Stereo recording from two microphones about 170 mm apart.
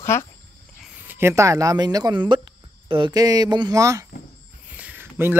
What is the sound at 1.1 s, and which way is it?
Speech, 15° right (ahead or behind).